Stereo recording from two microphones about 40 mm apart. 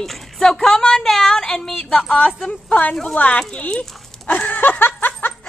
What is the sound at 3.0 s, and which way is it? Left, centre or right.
Speech, left.